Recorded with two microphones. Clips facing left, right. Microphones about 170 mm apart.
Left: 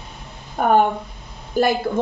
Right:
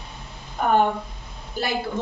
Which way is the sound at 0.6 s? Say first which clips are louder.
Left 3 dB; 50° left (ahead or behind).